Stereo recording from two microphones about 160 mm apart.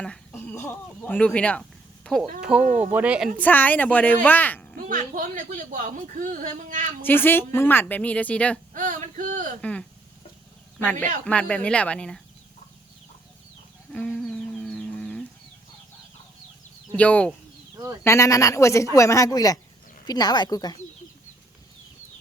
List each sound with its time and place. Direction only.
0.0 s speech: 10° left (ahead or behind)
2.0 s a sound: 10° left (ahead or behind)
2.4 s speech: 5° right (ahead or behind)
3.3 s a woman's voice: 10° left (ahead or behind)
4.9 s speech: 55° right (ahead or behind)
7.0 s a woman's voice: 15° left (ahead or behind)
8.7 s a sound: 55° right (ahead or behind)
9.6 s a woman's voice: 5° left (ahead or behind)
11.3 s a woman's voice: 5° left (ahead or behind)
13.9 s a sound: 5° left (ahead or behind)
16.9 s a woman's voice: 10° left (ahead or behind)
18.0 s a woman's voice: 20° left (ahead or behind)